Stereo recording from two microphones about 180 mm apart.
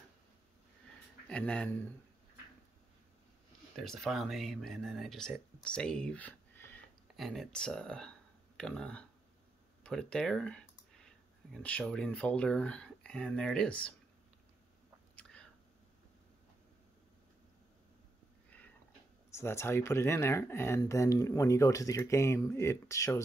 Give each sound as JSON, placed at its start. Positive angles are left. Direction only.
{"t": 1.3, "sound": "speech", "side_deg": 5}
{"t": 3.7, "sound": "speech", "side_deg": 0}
{"t": 15.1, "sound": "a sound", "side_deg": 5}
{"t": 19.3, "sound": "speech", "side_deg": 15}